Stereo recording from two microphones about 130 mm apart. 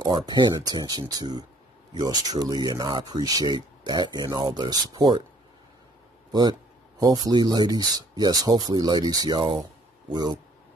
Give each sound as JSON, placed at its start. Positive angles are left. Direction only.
{"t": 0.0, "sound": "speech", "side_deg": -30}
{"t": 7.0, "sound": "speech", "side_deg": -30}
{"t": 9.6, "sound": "a sound", "side_deg": -30}